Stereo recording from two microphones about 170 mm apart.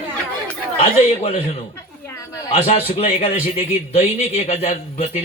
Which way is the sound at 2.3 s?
20° left (ahead or behind).